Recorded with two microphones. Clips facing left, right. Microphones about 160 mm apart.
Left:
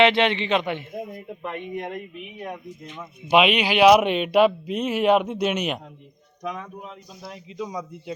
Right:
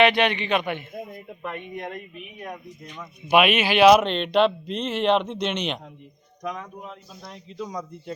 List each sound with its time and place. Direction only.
0.0 s a man's voice: 20° left (ahead or behind)
3.2 s a man's voice: 15° left (ahead or behind)